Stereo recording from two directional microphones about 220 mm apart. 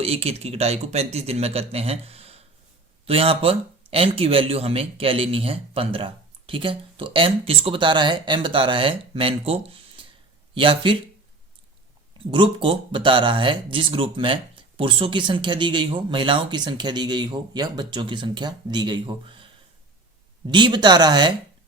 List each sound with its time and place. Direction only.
0.0 s speech: 25° right (ahead or behind)
12.3 s speech: 25° right (ahead or behind)
20.5 s speech: 20° right (ahead or behind)